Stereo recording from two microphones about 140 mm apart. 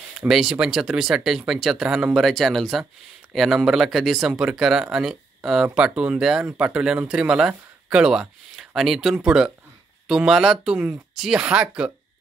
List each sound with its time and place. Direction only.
0.2 s speech: 5° right (ahead or behind)